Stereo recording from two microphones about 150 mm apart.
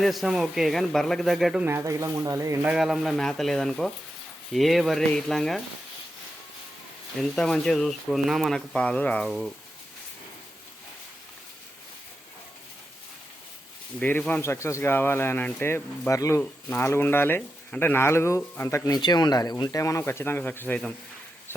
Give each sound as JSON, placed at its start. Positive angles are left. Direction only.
{"t": 0.0, "sound": "speech", "side_deg": 0}
{"t": 1.6, "sound": "speech", "side_deg": -20}
{"t": 2.6, "sound": "speech", "side_deg": -5}
{"t": 7.2, "sound": "speech", "side_deg": 5}
{"t": 14.0, "sound": "speech", "side_deg": 10}